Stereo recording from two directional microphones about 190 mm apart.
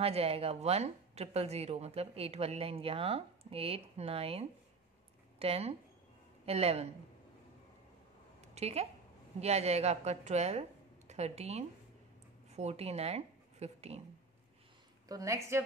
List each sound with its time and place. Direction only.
0.0 s a woman's voice: 30° right (ahead or behind)
8.4 s a sound: 35° right (ahead or behind)
9.4 s a woman's voice: 35° right (ahead or behind)
15.0 s a woman's voice: 15° right (ahead or behind)